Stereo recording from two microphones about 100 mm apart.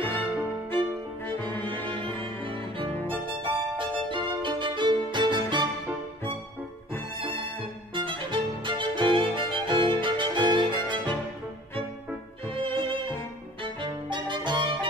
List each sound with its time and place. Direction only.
0.0 s violin: 20° left (ahead or behind)
1.2 s music: 20° left (ahead or behind)
3.4 s music: 55° right (ahead or behind)
4.1 s violin: 55° right (ahead or behind)
7.2 s music: 60° right (ahead or behind)
7.9 s violin: 55° right (ahead or behind)
12.5 s music: 65° right (ahead or behind)